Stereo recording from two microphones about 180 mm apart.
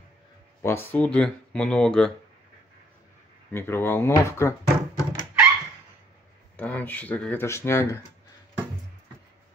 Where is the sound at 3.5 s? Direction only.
15° left (ahead or behind).